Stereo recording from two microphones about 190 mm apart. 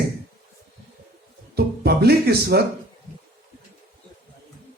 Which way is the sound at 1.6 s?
55° right (ahead or behind).